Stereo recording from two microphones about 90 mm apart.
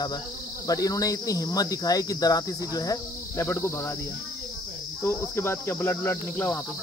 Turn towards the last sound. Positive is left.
turn(degrees=25)  # may be behind; listen again after turning